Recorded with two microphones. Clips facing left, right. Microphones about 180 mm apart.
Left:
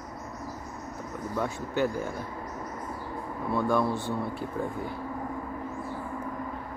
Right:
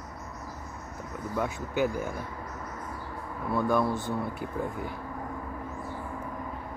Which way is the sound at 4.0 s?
20° right (ahead or behind).